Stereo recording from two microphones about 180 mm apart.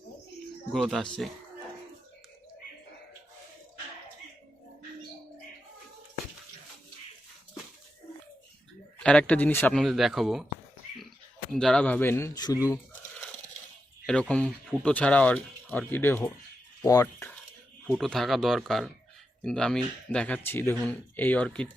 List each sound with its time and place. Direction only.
0.7 s speech: centre (ahead or behind)
9.0 s speech: 5° left (ahead or behind)
11.5 s speech: 5° left (ahead or behind)
14.1 s speech: 5° left (ahead or behind)
17.8 s speech: centre (ahead or behind)